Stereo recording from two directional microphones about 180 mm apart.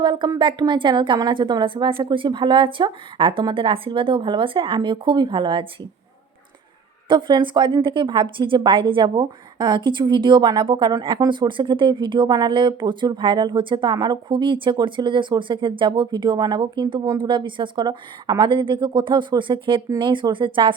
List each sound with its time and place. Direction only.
0.0 s a woman's voice: 25° right (ahead or behind)
7.1 s a woman's voice: 25° right (ahead or behind)